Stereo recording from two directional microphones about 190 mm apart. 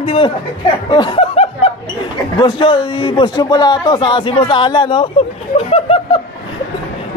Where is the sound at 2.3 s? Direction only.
25° left (ahead or behind).